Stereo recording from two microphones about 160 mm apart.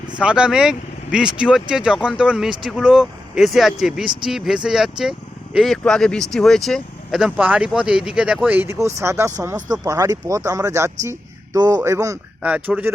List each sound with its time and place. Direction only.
0.2 s speech: 5° right (ahead or behind)